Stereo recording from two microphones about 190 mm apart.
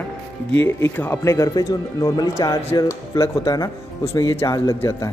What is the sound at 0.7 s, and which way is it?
Speech, 10° left (ahead or behind).